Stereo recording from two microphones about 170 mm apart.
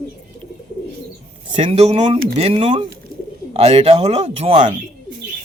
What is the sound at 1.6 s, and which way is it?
A man's voice, 35° right (ahead or behind).